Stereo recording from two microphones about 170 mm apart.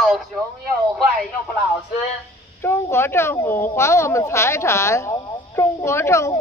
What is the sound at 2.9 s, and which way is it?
Speech, 15° left (ahead or behind).